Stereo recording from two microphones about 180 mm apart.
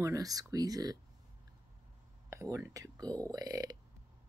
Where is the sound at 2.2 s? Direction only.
15° right (ahead or behind).